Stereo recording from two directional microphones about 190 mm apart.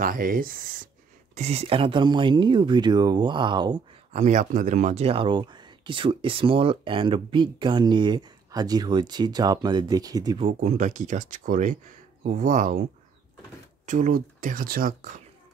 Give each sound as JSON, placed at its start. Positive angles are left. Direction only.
{"t": 0.0, "sound": "speech", "side_deg": -50}
{"t": 1.3, "sound": "speech", "side_deg": -35}
{"t": 4.1, "sound": "speech", "side_deg": -40}
{"t": 10.4, "sound": "speech", "side_deg": -40}
{"t": 13.8, "sound": "speech", "side_deg": -45}